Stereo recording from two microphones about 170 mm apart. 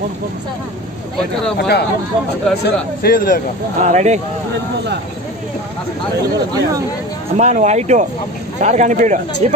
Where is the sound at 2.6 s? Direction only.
55° left (ahead or behind).